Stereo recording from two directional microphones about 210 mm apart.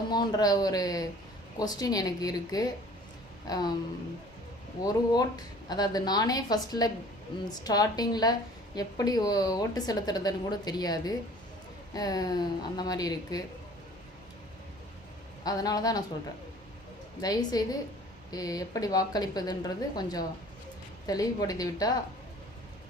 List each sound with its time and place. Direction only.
0.1 s a woman's voice: 20° left (ahead or behind)
3.4 s a sound: 20° left (ahead or behind)
4.8 s a woman's voice: 20° left (ahead or behind)
15.4 s speech: 15° left (ahead or behind)
17.2 s a woman's voice: 20° left (ahead or behind)